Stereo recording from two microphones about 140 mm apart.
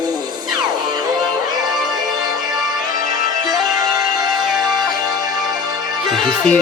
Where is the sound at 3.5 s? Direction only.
25° right (ahead or behind).